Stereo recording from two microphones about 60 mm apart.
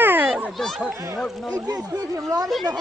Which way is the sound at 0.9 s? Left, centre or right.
Right.